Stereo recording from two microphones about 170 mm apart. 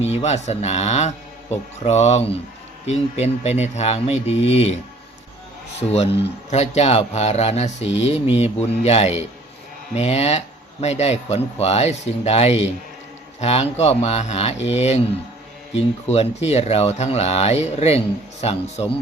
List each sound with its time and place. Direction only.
0.2 s speech: 40° left (ahead or behind)
6.5 s speech: 40° left (ahead or behind)